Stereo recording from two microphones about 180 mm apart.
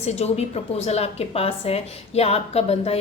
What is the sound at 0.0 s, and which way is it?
A woman's voice, 35° left (ahead or behind).